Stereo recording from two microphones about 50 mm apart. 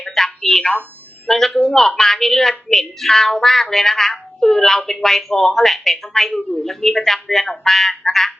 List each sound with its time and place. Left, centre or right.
0.0 s telephone: centre
1.3 s a woman's voice: centre